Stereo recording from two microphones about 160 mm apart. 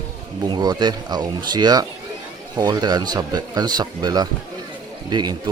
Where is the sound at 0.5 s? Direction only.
25° right (ahead or behind).